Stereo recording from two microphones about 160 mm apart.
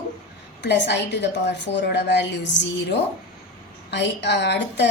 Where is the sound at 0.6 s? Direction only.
90° left.